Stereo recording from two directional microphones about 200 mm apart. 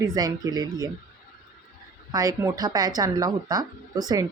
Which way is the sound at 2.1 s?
20° right (ahead or behind).